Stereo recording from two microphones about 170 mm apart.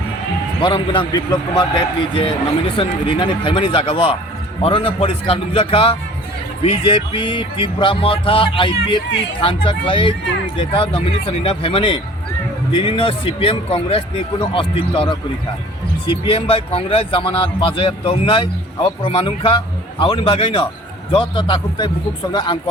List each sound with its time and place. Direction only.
0.6 s a man's voice: 25° left (ahead or behind)